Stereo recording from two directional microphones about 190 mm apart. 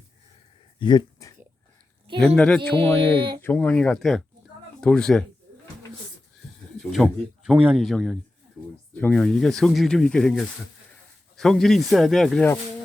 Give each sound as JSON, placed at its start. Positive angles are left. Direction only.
{"t": 0.8, "sound": "a sound", "side_deg": 20}
{"t": 2.1, "sound": "speech", "side_deg": 5}
{"t": 3.2, "sound": "speech", "side_deg": -25}
{"t": 3.4, "sound": "speech", "side_deg": 10}
{"t": 6.9, "sound": "speech", "side_deg": 0}